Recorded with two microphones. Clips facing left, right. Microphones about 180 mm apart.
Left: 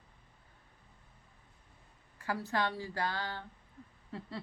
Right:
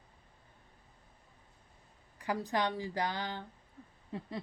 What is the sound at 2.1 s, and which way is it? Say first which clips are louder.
Speech: right 1 dB; 15° right (ahead or behind).